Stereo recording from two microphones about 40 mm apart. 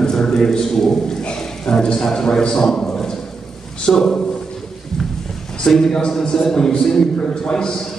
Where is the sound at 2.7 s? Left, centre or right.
Centre.